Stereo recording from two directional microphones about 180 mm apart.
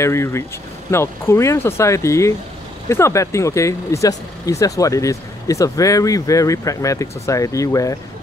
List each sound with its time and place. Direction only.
0.0 s speech: 15° left (ahead or behind)